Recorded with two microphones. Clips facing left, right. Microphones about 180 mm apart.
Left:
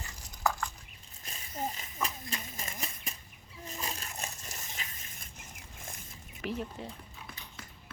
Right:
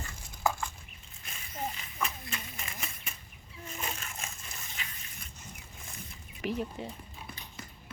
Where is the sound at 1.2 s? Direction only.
35° left (ahead or behind).